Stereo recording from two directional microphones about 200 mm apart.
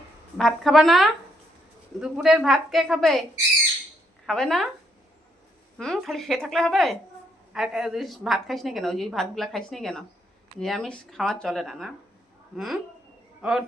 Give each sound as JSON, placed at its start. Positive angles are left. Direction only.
{"t": 0.3, "sound": "a woman's voice", "side_deg": 0}
{"t": 4.3, "sound": "a woman's voice", "side_deg": 0}
{"t": 5.7, "sound": "a woman's voice", "side_deg": 0}